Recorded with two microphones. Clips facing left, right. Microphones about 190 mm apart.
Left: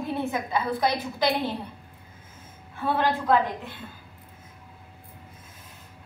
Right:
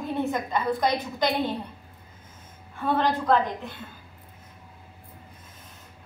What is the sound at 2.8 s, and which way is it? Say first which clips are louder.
Speech: right 1 dB; 5° left (ahead or behind).